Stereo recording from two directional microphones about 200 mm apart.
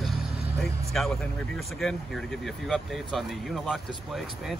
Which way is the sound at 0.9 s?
Centre (ahead or behind).